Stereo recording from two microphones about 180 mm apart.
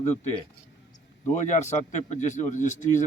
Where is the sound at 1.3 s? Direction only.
40° left (ahead or behind).